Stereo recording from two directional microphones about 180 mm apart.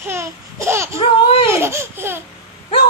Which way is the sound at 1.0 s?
30° left (ahead or behind).